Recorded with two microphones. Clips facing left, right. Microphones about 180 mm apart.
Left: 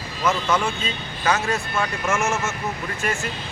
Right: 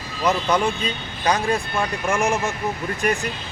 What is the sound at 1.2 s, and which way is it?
Speech, 15° right (ahead or behind).